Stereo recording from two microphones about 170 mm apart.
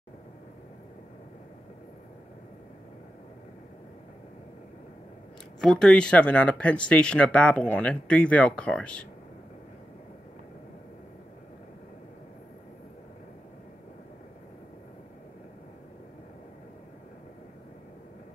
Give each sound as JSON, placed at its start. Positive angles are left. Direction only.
{"t": 5.6, "sound": "speech", "side_deg": 5}